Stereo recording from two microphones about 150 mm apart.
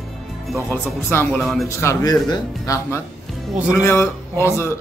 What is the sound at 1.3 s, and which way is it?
Speech, centre (ahead or behind).